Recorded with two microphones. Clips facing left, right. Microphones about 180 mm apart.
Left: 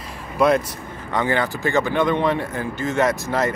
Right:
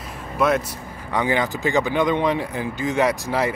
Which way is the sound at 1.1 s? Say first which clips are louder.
Even; 15° right (ahead or behind).